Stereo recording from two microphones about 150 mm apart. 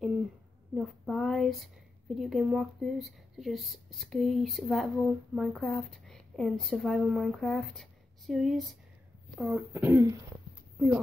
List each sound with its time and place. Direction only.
0.7 s speech: centre (ahead or behind); by 10.9 s 15° right (ahead or behind)